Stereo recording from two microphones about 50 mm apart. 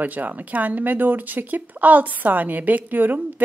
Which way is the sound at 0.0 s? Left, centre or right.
Right.